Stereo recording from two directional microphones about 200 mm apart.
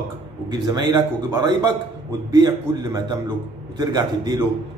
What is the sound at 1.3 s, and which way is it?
Speech, 20° right (ahead or behind).